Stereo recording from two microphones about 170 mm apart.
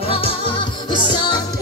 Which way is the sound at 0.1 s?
35° left (ahead or behind).